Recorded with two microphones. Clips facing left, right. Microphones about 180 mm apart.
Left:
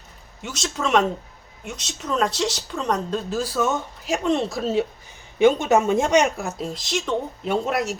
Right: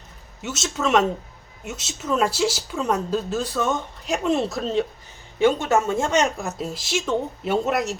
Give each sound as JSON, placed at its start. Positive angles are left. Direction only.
{"t": 0.4, "sound": "speech", "side_deg": -5}
{"t": 5.4, "sound": "speech", "side_deg": 15}
{"t": 6.3, "sound": "speech", "side_deg": 0}